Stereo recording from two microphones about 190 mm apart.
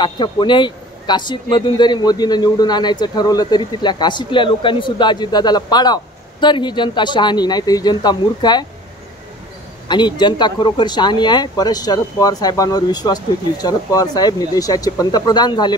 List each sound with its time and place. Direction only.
0.0 s speech: 25° left (ahead or behind)
9.8 s speech: 25° left (ahead or behind)